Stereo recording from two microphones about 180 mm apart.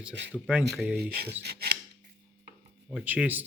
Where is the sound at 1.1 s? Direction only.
65° right (ahead or behind).